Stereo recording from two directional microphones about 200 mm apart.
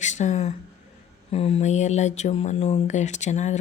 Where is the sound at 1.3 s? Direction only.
30° left (ahead or behind).